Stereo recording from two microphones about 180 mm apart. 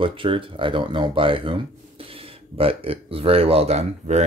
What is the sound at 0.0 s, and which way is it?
Speech, 30° right (ahead or behind).